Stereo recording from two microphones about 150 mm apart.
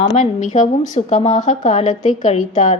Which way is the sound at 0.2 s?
55° left (ahead or behind).